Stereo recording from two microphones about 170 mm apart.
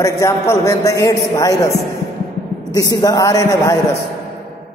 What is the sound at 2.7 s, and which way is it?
A man's voice, 20° left (ahead or behind).